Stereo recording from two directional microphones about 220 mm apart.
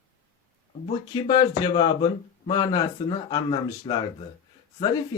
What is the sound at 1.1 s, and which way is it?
Speech, 20° left (ahead or behind).